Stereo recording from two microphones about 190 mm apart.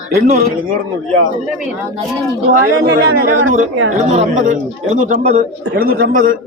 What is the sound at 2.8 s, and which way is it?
Speech, 60° right (ahead or behind).